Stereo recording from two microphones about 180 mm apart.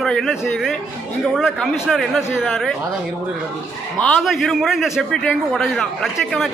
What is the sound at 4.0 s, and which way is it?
A man's voice, 5° left (ahead or behind).